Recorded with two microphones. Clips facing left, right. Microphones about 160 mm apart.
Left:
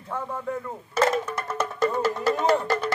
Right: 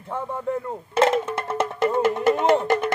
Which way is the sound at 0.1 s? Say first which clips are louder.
Right 3 dB; 25° right (ahead or behind).